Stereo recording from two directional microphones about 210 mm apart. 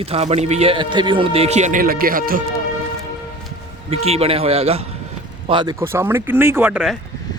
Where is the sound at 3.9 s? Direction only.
30° right (ahead or behind); by 6.9 s 5° right (ahead or behind).